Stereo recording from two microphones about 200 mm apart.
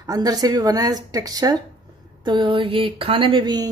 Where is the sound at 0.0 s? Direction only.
20° right (ahead or behind).